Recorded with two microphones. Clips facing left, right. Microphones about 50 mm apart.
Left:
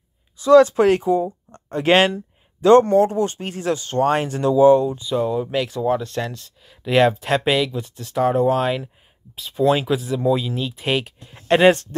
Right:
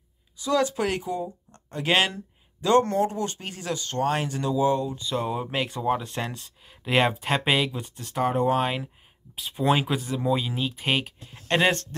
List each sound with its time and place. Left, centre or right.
0.4 s speech: left
5.3 s speech: centre
8.0 s speech: centre
11.4 s speech: centre